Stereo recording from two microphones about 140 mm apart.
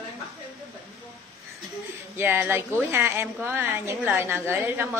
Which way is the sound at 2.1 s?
15° right (ahead or behind).